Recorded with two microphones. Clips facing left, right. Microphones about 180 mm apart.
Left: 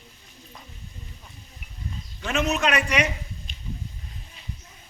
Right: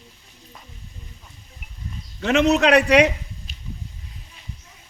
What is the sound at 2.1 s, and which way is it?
Speech, 70° right (ahead or behind).